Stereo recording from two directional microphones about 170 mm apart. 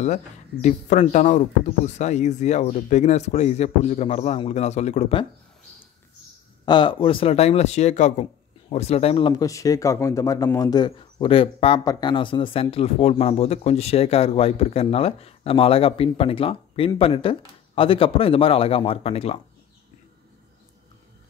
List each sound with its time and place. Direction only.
0.0 s speech: 45° left (ahead or behind)
6.6 s speech: 25° left (ahead or behind)
11.8 s speech: 20° left (ahead or behind)